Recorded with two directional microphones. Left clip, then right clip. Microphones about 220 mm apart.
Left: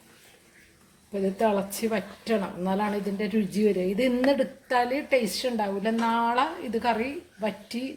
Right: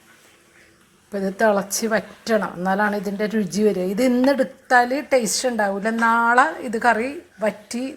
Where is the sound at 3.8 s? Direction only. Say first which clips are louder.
Right 5 dB; 20° right (ahead or behind).